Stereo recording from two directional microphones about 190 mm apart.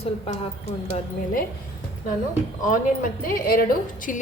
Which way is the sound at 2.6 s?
45° left (ahead or behind).